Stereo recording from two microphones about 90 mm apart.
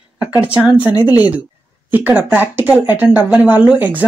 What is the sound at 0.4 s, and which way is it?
Speech, 15° right (ahead or behind).